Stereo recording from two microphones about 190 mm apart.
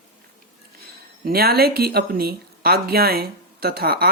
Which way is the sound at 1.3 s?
55° right (ahead or behind).